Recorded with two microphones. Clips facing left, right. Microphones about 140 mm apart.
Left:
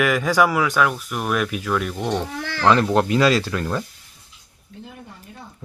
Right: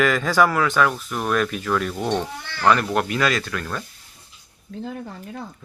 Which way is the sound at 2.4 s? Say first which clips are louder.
Left 7 dB; 90° left.